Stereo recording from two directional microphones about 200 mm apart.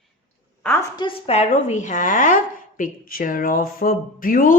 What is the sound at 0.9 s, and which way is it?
Speech, 30° left (ahead or behind).